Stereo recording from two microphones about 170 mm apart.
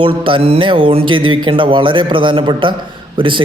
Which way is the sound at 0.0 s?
30° right (ahead or behind).